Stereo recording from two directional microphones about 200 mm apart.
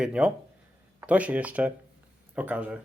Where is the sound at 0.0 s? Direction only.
5° right (ahead or behind).